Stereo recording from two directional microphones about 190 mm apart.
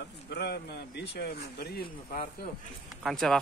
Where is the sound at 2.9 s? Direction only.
Centre (ahead or behind).